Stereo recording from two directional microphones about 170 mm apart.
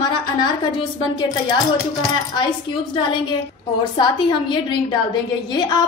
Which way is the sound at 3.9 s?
30° left (ahead or behind).